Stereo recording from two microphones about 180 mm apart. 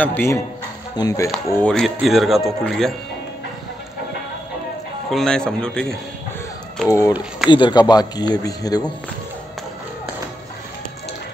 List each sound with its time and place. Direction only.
0.0 s speech: 10° left (ahead or behind)
1.7 s speech: centre (ahead or behind)
5.1 s speech: 5° left (ahead or behind)
6.9 s speech: 20° left (ahead or behind)
7.2 s speech: 5° right (ahead or behind)
7.5 s speech: 25° left (ahead or behind)